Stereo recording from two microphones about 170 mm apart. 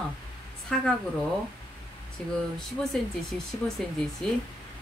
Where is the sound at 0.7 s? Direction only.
5° left (ahead or behind).